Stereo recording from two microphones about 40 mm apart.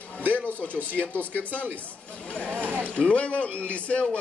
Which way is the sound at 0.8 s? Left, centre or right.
Right.